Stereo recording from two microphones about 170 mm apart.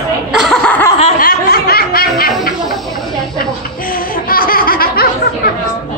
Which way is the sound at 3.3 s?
55° left (ahead or behind).